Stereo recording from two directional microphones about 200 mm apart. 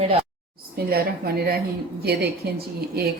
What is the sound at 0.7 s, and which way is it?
A woman's voice, 50° right (ahead or behind).